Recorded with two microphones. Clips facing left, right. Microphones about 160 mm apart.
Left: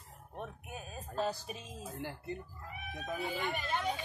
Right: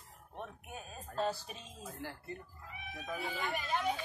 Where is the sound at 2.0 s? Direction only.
20° left (ahead or behind).